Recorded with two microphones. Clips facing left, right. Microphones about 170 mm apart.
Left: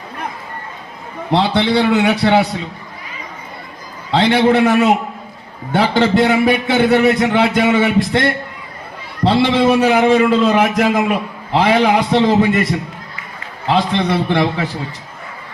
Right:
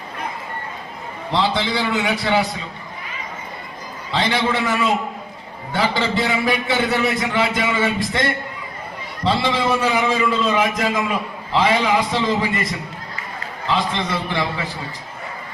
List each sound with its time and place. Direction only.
1.3 s a man's voice: 65° left (ahead or behind)
4.1 s a man's voice: 65° left (ahead or behind)
13.7 s a man's voice: 65° left (ahead or behind)